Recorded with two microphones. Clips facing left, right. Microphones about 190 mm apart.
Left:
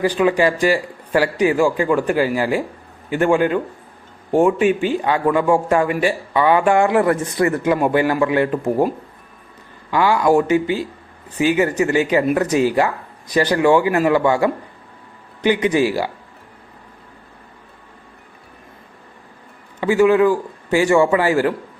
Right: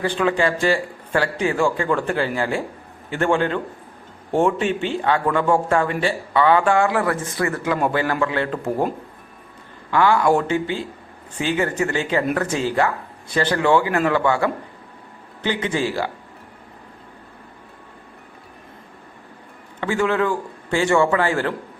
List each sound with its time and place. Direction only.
0.0 s speech: 15° left (ahead or behind)
9.9 s speech: 10° left (ahead or behind)
19.8 s speech: 10° left (ahead or behind)